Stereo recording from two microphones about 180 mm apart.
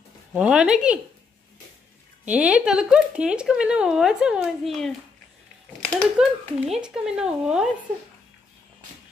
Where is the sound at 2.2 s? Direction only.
5° right (ahead or behind).